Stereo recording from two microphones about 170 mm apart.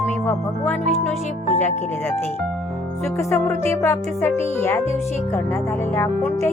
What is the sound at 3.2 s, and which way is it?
Speech, 15° left (ahead or behind).